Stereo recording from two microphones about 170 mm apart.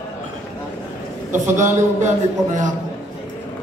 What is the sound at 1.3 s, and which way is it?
A man's voice, 45° right (ahead or behind).